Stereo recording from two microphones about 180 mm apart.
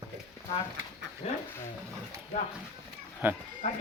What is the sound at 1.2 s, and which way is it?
Speech, 35° left (ahead or behind).